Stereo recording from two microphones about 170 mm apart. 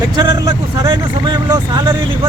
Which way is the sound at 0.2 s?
20° right (ahead or behind).